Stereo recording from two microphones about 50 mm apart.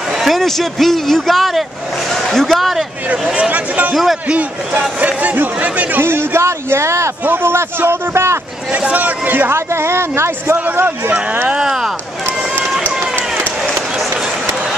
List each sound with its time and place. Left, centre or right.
0.2 s a man's voice: centre
3.3 s a man's voice: right
3.9 s a man's voice: centre
4.3 s speech: right
5.9 s speech: right
7.2 s speech: right
8.8 s a man's voice: right
9.5 s speech: right
11.6 s speech: centre